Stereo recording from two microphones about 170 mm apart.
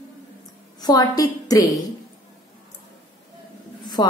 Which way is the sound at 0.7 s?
25° left (ahead or behind).